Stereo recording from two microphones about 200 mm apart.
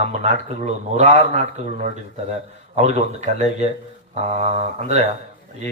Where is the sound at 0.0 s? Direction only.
35° right (ahead or behind).